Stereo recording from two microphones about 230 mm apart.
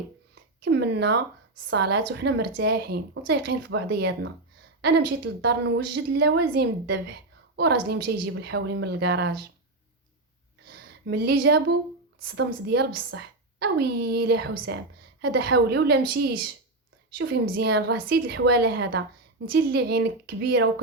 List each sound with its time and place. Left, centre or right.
0.6 s a woman's voice: right
10.7 s a woman's voice: right
17.4 s a woman's voice: right